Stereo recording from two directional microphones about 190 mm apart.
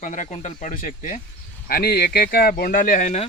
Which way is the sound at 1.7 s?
55° left (ahead or behind).